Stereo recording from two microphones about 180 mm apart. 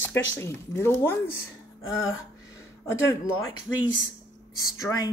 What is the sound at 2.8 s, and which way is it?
Speech, 20° left (ahead or behind).